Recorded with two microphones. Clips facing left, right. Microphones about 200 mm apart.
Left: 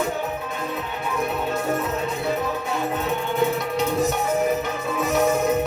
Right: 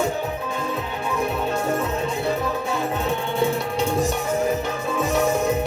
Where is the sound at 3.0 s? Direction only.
30° right (ahead or behind).